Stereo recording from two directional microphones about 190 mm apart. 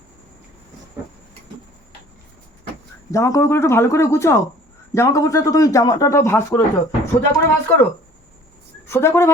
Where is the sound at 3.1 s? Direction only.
15° left (ahead or behind).